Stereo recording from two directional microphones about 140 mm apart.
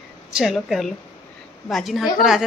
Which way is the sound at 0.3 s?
Centre (ahead or behind).